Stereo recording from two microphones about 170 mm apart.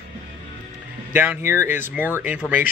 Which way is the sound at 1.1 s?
10° right (ahead or behind).